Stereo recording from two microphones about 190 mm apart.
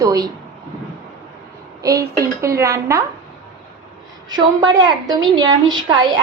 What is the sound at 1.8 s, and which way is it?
A woman's voice, 15° right (ahead or behind).